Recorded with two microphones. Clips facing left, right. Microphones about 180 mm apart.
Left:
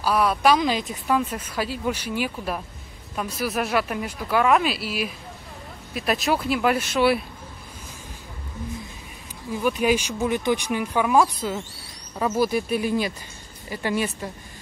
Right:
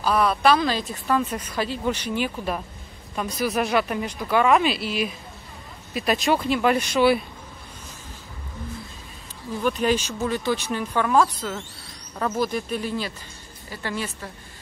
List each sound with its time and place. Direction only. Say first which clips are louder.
0.0 s speech: even; 10° left (ahead or behind)
9.5 s speech: left 1 dB; 10° left (ahead or behind)